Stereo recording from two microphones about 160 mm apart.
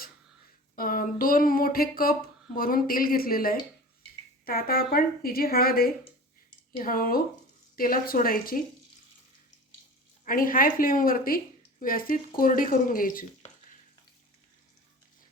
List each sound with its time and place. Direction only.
0.8 s a woman's voice: 60° left (ahead or behind)
10.2 s speech: 60° left (ahead or behind)